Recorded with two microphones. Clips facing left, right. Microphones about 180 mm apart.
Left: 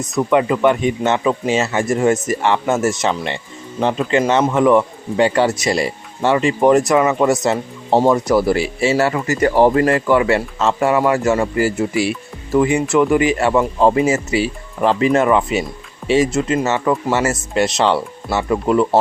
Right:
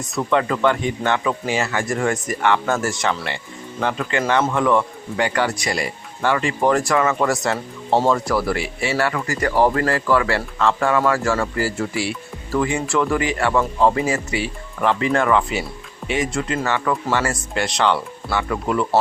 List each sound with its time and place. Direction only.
0.2 s speech: 15° left (ahead or behind)